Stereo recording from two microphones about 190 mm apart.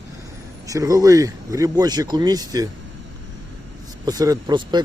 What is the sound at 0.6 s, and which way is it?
Speech, 15° right (ahead or behind).